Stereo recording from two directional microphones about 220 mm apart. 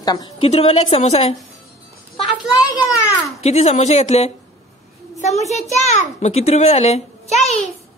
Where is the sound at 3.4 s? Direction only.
30° left (ahead or behind).